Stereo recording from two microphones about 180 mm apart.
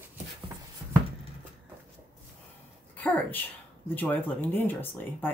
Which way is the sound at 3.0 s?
10° left (ahead or behind).